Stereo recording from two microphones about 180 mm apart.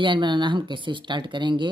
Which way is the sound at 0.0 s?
25° right (ahead or behind).